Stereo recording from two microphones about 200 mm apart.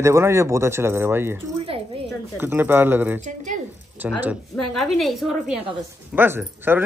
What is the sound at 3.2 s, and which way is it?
Speech, 40° right (ahead or behind).